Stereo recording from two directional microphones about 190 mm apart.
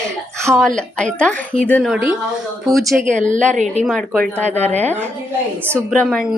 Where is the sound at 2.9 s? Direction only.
40° right (ahead or behind).